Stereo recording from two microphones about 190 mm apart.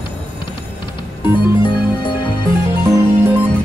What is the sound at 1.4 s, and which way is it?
Music, 25° left (ahead or behind).